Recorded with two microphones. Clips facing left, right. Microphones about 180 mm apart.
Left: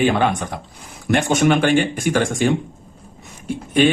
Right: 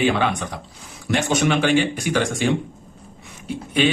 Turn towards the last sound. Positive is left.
turn(degrees=50)  # may be behind; listen again after turning